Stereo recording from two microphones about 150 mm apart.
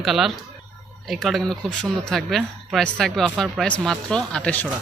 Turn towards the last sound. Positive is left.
turn(degrees=5)  # may be behind; listen again after turning